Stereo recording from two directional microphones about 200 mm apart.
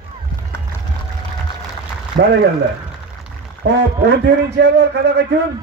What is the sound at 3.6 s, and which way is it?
A man's voice, 55° right (ahead or behind).